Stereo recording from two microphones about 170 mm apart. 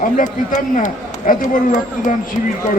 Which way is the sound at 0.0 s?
50° left (ahead or behind).